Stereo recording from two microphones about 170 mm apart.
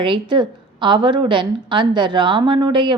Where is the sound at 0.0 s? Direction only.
30° right (ahead or behind).